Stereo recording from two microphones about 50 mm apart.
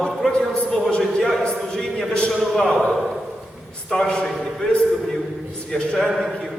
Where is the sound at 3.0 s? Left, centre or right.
Centre.